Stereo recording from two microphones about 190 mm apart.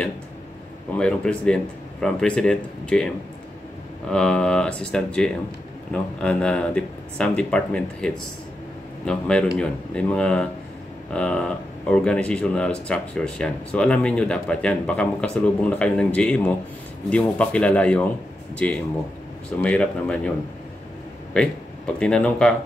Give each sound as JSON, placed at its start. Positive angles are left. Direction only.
{"t": 0.9, "sound": "speech", "side_deg": 5}
{"t": 4.1, "sound": "speech", "side_deg": 5}
{"t": 21.3, "sound": "speech", "side_deg": 5}